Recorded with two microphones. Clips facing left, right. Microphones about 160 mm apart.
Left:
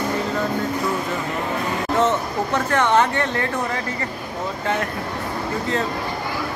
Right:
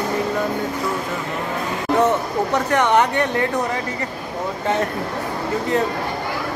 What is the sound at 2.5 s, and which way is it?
Speech, 15° right (ahead or behind).